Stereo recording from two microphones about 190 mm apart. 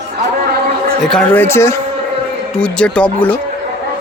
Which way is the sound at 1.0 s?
5° left (ahead or behind).